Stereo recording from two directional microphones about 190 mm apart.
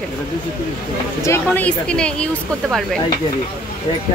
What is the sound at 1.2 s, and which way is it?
Speech, 10° left (ahead or behind).